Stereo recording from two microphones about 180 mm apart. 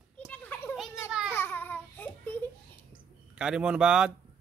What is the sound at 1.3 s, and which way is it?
Babbling, 10° left (ahead or behind).